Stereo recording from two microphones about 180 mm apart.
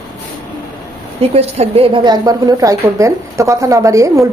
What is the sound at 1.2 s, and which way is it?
A woman's voice, 35° right (ahead or behind).